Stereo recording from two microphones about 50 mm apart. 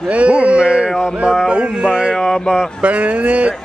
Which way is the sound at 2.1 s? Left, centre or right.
Centre.